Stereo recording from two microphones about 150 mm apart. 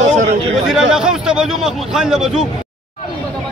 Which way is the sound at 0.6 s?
5° right (ahead or behind).